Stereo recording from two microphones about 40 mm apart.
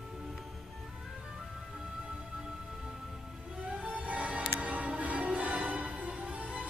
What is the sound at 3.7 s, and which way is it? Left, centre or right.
Music, right.